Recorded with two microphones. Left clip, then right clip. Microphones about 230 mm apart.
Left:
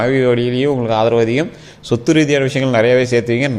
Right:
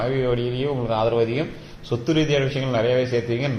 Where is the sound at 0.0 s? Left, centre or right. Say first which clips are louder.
Left 9 dB; left.